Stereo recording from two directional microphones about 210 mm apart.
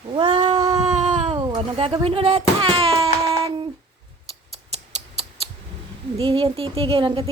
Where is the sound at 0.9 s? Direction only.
30° right (ahead or behind).